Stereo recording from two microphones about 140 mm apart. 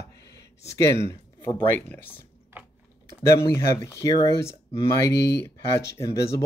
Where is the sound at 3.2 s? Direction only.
20° left (ahead or behind).